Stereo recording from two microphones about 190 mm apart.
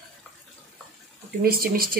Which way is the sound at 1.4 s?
50° right (ahead or behind).